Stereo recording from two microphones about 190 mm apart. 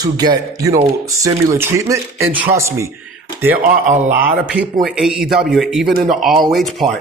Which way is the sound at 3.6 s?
45° right (ahead or behind).